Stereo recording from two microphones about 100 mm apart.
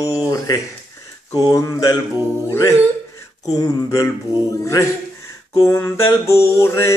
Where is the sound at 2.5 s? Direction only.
30° left (ahead or behind).